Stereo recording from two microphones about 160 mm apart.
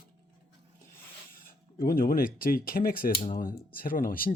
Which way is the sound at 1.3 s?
65° left (ahead or behind).